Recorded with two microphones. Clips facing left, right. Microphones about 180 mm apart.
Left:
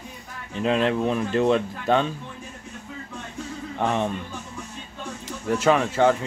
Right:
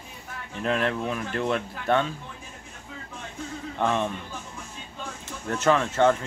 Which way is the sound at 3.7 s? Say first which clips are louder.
Left 1 dB; 15° left (ahead or behind).